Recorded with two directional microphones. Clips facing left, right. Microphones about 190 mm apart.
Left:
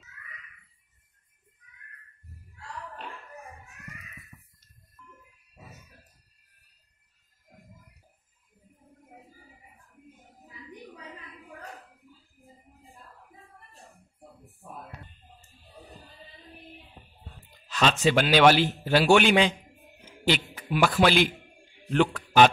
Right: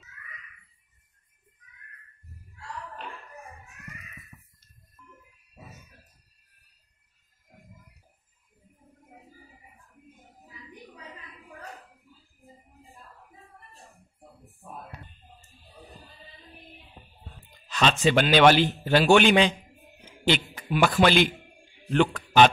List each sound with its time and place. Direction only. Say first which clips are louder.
17.5 s a man's voice: even; 5° left (ahead or behind)